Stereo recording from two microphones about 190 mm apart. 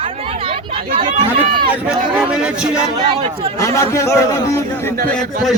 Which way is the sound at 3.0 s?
30° right (ahead or behind).